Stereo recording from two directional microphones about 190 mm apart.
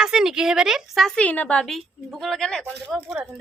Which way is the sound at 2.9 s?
5° right (ahead or behind).